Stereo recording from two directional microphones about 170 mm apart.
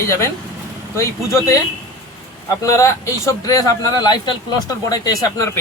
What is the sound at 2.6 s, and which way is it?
A man's voice, 20° left (ahead or behind).